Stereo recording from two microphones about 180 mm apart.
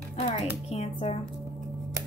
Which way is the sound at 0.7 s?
35° left (ahead or behind).